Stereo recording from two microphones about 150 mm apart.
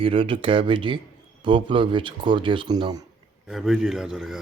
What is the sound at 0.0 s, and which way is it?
Speech, 35° right (ahead or behind).